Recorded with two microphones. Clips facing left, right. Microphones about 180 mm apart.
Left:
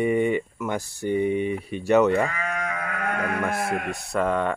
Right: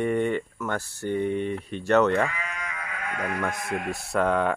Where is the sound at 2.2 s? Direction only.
50° left (ahead or behind).